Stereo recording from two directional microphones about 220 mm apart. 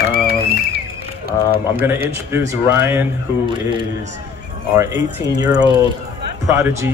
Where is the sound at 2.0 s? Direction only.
10° right (ahead or behind).